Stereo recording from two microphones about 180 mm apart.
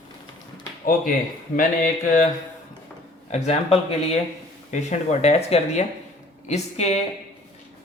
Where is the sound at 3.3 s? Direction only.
40° left (ahead or behind).